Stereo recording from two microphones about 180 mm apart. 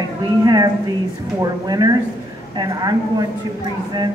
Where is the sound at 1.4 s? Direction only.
20° right (ahead or behind).